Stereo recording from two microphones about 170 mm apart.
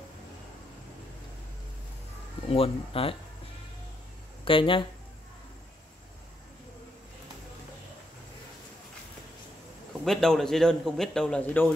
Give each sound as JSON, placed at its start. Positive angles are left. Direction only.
{"t": 2.4, "sound": "speech", "side_deg": 35}
{"t": 4.5, "sound": "speech", "side_deg": 30}
{"t": 10.0, "sound": "a man's voice", "side_deg": 0}